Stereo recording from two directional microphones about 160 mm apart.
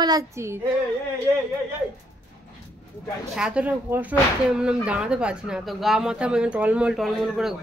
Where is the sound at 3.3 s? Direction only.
5° right (ahead or behind).